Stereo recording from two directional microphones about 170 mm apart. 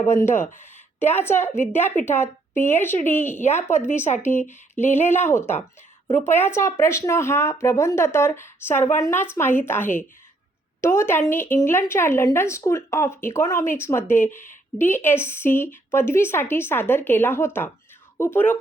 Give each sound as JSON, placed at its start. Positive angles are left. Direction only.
{"t": 0.2, "sound": "a woman's voice", "side_deg": 15}
{"t": 3.4, "sound": "a woman's voice", "side_deg": 40}
{"t": 4.4, "sound": "a sound", "side_deg": 15}
{"t": 5.0, "sound": "a woman's voice", "side_deg": 15}